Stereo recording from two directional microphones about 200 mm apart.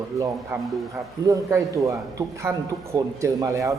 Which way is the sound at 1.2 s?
15° right (ahead or behind).